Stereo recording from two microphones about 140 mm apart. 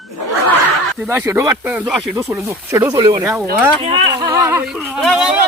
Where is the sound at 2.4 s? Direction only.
20° right (ahead or behind).